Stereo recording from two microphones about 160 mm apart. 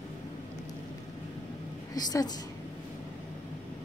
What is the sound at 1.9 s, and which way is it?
Speech, 25° left (ahead or behind).